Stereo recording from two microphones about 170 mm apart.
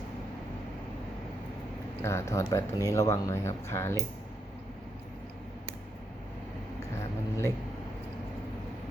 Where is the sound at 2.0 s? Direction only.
15° left (ahead or behind).